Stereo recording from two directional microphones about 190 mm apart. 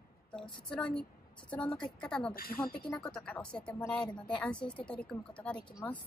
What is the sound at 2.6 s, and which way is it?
Speech, 5° left (ahead or behind).